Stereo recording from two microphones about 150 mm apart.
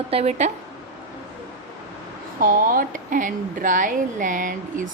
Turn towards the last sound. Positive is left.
turn(degrees=-60)  # may be behind; listen again after turning